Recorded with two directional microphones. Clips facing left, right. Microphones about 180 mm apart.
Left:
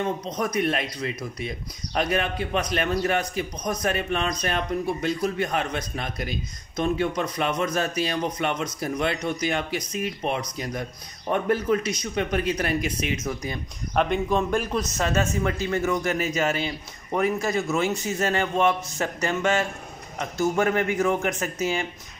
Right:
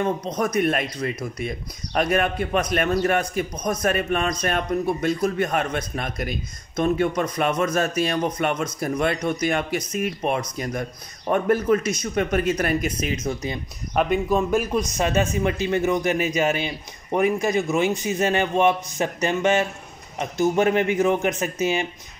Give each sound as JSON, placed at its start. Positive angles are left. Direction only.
{"t": 0.0, "sound": "speech", "side_deg": -50}
{"t": 13.9, "sound": "a man's voice", "side_deg": -5}